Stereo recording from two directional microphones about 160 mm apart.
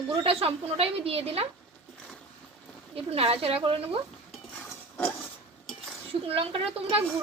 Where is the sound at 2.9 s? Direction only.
35° right (ahead or behind).